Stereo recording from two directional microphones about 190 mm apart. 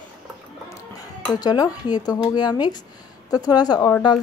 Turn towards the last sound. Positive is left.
turn(degrees=20)  # may be behind; listen again after turning